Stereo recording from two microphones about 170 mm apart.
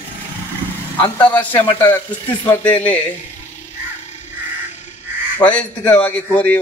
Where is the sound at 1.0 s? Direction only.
10° left (ahead or behind).